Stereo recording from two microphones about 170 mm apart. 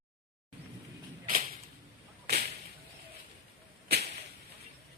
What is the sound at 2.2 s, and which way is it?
Whip, 70° right (ahead or behind).